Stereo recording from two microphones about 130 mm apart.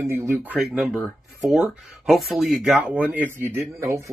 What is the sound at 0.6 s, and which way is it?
Speech, 5° right (ahead or behind).